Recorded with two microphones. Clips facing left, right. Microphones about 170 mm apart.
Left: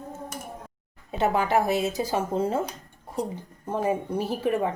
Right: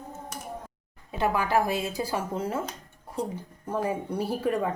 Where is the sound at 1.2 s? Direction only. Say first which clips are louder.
Left 2 dB; 25° left (ahead or behind).